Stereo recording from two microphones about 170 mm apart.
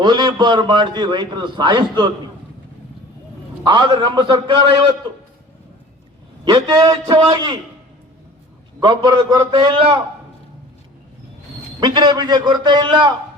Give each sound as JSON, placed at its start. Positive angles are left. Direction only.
{"t": 0.0, "sound": "a man's voice", "side_deg": -25}
{"t": 3.6, "sound": "a man's voice", "side_deg": -25}
{"t": 6.4, "sound": "a man's voice", "side_deg": -25}
{"t": 8.8, "sound": "a man's voice", "side_deg": -25}
{"t": 11.8, "sound": "a man's voice", "side_deg": -25}